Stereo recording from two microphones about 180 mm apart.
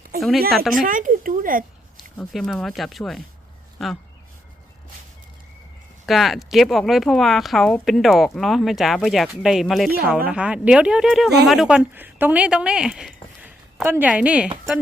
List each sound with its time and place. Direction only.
0.7 s speech: 50° right (ahead or behind)
2.1 s speech: centre (ahead or behind)
6.1 s a woman's voice: centre (ahead or behind)